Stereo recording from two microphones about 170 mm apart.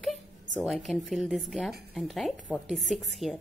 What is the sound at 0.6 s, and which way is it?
Speech, centre (ahead or behind).